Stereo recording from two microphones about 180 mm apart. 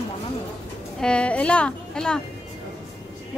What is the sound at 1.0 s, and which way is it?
A woman's voice, 5° left (ahead or behind).